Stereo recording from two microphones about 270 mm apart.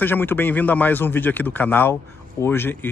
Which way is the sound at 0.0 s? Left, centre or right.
Centre.